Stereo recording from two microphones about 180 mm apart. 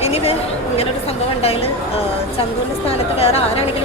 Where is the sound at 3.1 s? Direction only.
35° left (ahead or behind).